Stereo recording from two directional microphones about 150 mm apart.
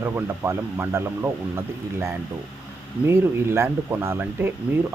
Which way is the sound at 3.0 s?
15° right (ahead or behind).